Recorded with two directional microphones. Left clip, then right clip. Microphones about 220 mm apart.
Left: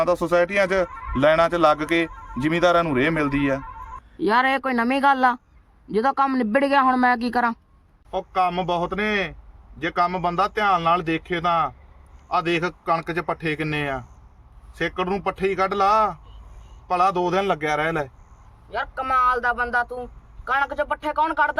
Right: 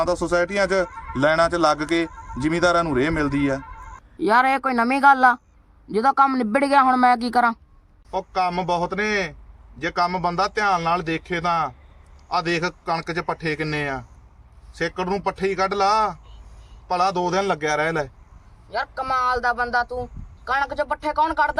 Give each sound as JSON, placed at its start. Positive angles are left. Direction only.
{"t": 0.0, "sound": "a man's voice", "side_deg": 10}
{"t": 4.2, "sound": "speech", "side_deg": 0}
{"t": 4.9, "sound": "a man's voice", "side_deg": 20}
{"t": 6.3, "sound": "a man's voice", "side_deg": 0}